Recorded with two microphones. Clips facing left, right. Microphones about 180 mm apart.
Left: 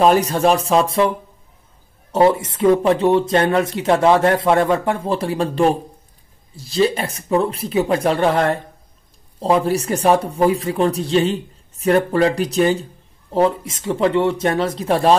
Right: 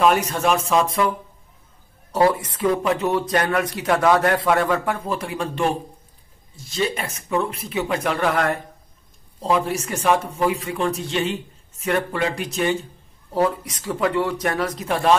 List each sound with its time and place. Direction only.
0.0 s speech: 35° left (ahead or behind)
2.1 s speech: 25° left (ahead or behind)
13.3 s speech: 25° left (ahead or behind)